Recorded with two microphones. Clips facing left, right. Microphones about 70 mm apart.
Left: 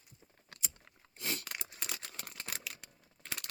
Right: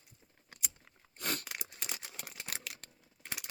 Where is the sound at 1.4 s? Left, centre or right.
Centre.